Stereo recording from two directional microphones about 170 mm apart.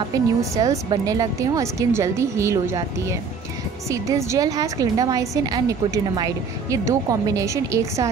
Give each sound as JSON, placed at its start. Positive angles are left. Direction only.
{"t": 0.4, "sound": "a woman's voice", "side_deg": -20}